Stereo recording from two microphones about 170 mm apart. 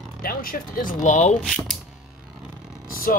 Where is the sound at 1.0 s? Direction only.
45° left (ahead or behind).